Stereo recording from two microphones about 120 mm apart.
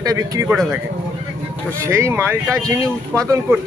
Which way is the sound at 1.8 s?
25° right (ahead or behind).